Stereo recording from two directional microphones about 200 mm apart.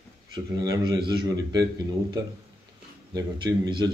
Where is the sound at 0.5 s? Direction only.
20° right (ahead or behind).